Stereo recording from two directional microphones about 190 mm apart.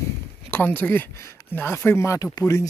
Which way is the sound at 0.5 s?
10° left (ahead or behind).